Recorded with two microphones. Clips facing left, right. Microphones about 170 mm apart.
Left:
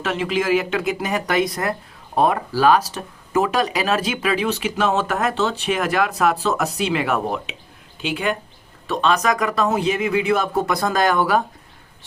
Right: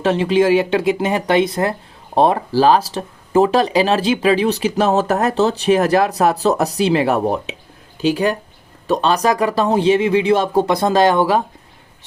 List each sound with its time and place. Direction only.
0.0 s speech: 30° right (ahead or behind)